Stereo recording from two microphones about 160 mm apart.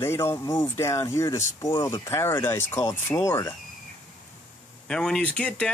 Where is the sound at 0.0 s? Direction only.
15° left (ahead or behind).